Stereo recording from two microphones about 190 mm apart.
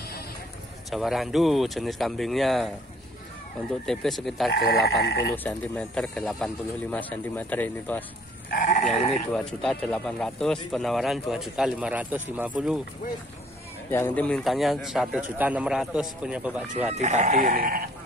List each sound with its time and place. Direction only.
0.8 s speech: centre (ahead or behind)
3.8 s speech: centre (ahead or behind)
4.5 s speech: 55° left (ahead or behind)
5.3 s speech: 10° left (ahead or behind)
8.5 s goat: 40° left (ahead or behind)
8.9 s speech: 35° left (ahead or behind)
9.3 s speech: 5° left (ahead or behind)
13.8 s speech: 10° left (ahead or behind); by 16.9 s 5° right (ahead or behind)
16.9 s speech: 35° right (ahead or behind)